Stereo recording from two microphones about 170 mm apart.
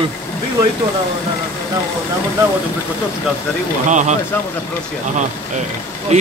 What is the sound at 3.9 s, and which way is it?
Speech, 45° right (ahead or behind).